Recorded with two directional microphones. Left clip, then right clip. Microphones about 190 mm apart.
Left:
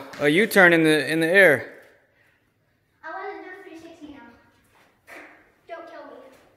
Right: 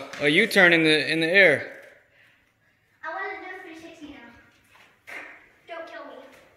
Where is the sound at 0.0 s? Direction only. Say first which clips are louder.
Left 1 dB; 20° left (ahead or behind).